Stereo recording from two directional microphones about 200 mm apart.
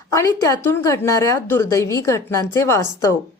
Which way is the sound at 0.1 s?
15° left (ahead or behind).